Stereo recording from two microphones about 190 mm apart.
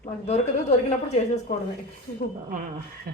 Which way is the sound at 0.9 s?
35° left (ahead or behind).